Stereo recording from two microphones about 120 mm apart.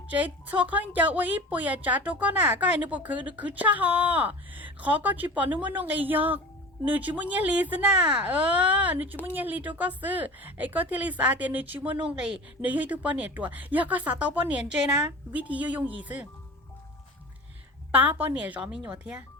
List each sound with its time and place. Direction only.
0.1 s a woman's voice: 15° right (ahead or behind)
17.9 s a woman's voice: 15° right (ahead or behind)